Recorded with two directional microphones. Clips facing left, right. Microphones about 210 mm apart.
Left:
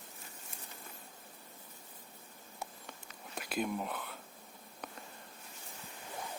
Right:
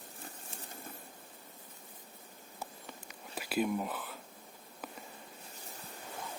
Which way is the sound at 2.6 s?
5° right (ahead or behind).